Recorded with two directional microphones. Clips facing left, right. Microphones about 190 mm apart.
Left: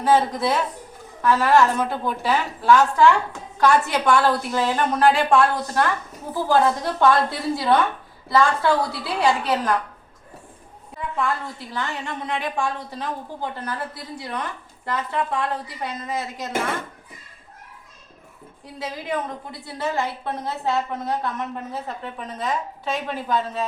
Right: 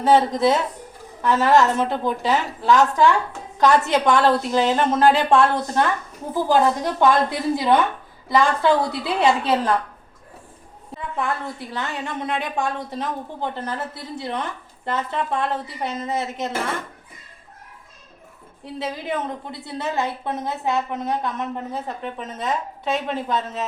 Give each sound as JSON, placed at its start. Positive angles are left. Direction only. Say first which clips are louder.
{"t": 0.0, "sound": "a woman's voice", "louder": "right 3 dB", "side_deg": -25}
{"t": 11.7, "sound": "a woman's voice", "louder": "even", "side_deg": -20}
{"t": 18.6, "sound": "a woman's voice", "louder": "right 3 dB", "side_deg": -25}